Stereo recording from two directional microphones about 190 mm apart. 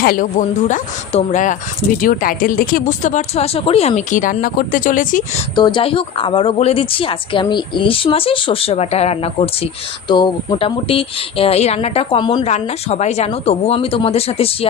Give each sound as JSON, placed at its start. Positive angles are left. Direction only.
{"t": 0.0, "sound": "speech", "side_deg": 50}
{"t": 5.5, "sound": "speech", "side_deg": 25}
{"t": 12.5, "sound": "speech", "side_deg": 35}